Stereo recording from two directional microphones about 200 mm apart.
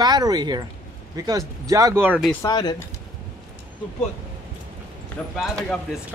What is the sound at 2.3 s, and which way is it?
Speech, 15° left (ahead or behind).